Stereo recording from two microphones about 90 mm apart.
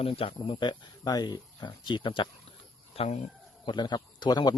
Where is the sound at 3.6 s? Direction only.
55° left (ahead or behind).